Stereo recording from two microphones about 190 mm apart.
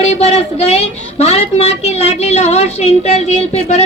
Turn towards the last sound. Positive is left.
turn(degrees=35)  # may be behind; listen again after turning